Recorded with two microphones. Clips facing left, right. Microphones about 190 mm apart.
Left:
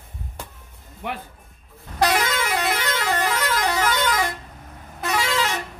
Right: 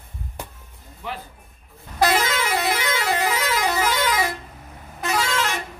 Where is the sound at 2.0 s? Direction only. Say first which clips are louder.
Right 1 dB; 5° right (ahead or behind).